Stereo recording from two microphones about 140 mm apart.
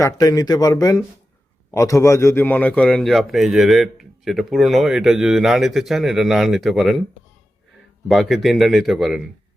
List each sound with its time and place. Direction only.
0.0 s a man's voice: 25° left (ahead or behind); by 7.0 s centre (ahead or behind)
8.0 s a man's voice: centre (ahead or behind)